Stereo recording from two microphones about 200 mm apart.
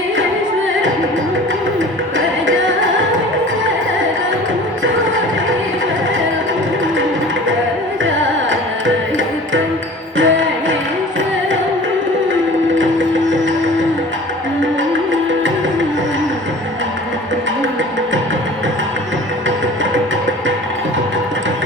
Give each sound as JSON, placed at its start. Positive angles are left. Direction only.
{"t": 10.2, "sound": "music", "side_deg": -70}
{"t": 12.8, "sound": "sewing machine", "side_deg": -70}